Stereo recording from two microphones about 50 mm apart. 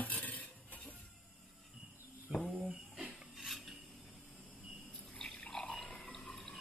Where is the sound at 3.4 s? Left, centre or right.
Centre.